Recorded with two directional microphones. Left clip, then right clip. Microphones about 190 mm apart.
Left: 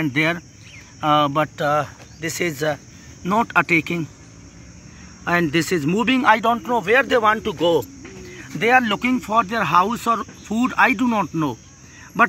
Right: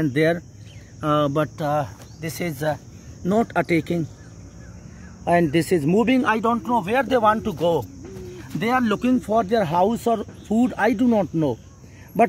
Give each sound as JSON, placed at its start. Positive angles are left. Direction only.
{"t": 0.0, "sound": "speech", "side_deg": 15}
{"t": 5.2, "sound": "speech", "side_deg": 15}